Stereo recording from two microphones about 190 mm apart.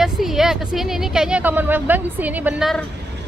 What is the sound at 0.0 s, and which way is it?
Speech, centre (ahead or behind).